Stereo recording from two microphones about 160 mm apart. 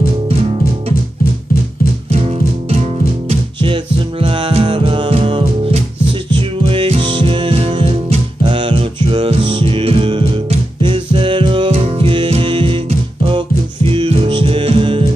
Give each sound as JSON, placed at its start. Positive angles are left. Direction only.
{"t": 0.3, "sound": "music", "side_deg": -40}
{"t": 3.3, "sound": "music", "side_deg": -35}
{"t": 13.8, "sound": "music", "side_deg": -35}